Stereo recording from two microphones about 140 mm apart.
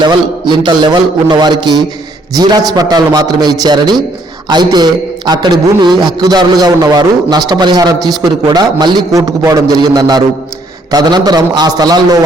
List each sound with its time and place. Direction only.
0.0 s a man's voice: 35° right (ahead or behind)